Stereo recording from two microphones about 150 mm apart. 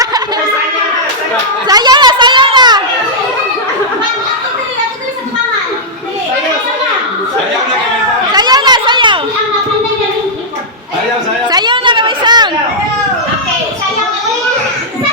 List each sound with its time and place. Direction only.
1.6 s chatter: 25° right (ahead or behind)
8.3 s chatter: 25° right (ahead or behind)
11.5 s chatter: 30° right (ahead or behind)